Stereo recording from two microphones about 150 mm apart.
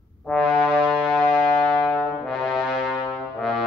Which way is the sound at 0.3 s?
Centre (ahead or behind).